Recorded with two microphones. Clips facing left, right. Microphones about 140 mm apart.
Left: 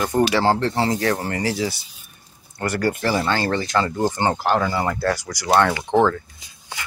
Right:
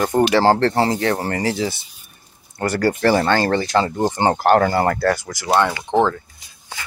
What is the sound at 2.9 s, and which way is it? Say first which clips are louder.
Speech: right 6 dB; 50° right (ahead or behind).